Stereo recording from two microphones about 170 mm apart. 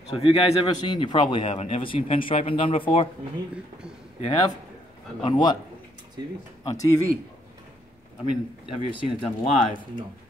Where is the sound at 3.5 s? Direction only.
5° right (ahead or behind).